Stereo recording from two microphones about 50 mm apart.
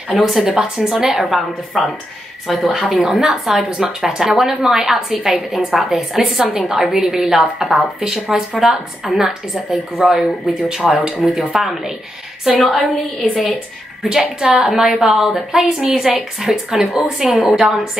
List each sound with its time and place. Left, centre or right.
0.2 s a woman's voice: centre
14.0 s a woman's voice: centre